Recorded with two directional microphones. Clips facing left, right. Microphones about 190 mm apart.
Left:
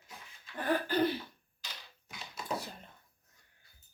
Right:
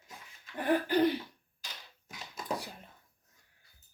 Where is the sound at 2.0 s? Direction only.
45° right (ahead or behind).